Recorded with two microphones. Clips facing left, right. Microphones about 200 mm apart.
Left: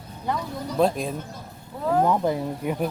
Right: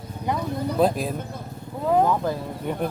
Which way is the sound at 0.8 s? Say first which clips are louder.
Even; 5° right (ahead or behind).